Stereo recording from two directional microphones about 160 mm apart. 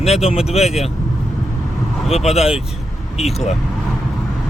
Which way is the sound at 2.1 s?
40° left (ahead or behind).